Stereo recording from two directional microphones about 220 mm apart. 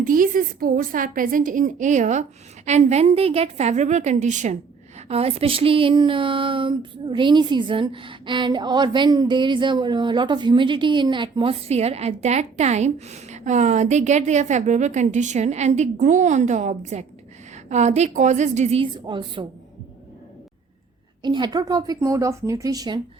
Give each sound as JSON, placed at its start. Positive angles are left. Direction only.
{"t": 0.0, "sound": "a woman's voice", "side_deg": -40}
{"t": 21.2, "sound": "a woman's voice", "side_deg": -20}